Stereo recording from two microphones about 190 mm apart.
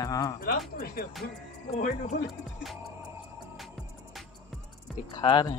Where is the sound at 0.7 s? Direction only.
50° left (ahead or behind).